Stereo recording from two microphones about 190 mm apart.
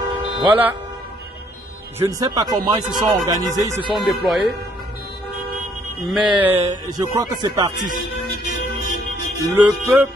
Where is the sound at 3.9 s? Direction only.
Centre (ahead or behind).